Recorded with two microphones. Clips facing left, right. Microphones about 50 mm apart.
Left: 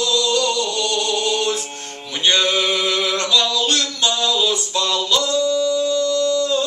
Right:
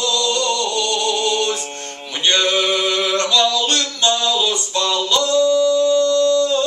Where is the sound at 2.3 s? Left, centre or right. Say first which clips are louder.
Right 1 dB; centre.